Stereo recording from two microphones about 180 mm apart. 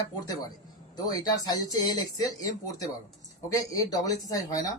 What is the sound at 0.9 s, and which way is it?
Speech, 20° left (ahead or behind).